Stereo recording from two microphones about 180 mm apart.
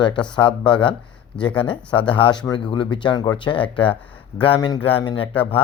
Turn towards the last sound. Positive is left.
turn(degrees=30)  # may be behind; listen again after turning